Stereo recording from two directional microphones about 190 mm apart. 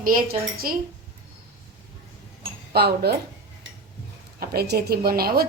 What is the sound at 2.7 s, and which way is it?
Speech, 55° right (ahead or behind).